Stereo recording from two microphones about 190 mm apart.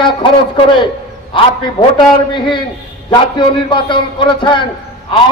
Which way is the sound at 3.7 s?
25° left (ahead or behind).